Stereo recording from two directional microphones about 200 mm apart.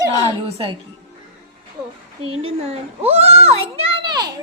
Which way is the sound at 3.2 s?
30° right (ahead or behind).